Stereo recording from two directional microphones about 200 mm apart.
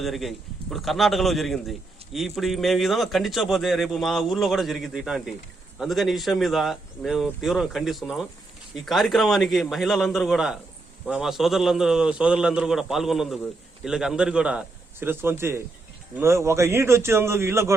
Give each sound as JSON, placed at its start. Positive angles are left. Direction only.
{"t": 0.0, "sound": "a man's voice", "side_deg": 0}